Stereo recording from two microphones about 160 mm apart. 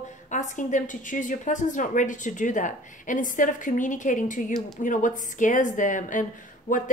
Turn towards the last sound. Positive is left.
turn(degrees=55)  # may be behind; listen again after turning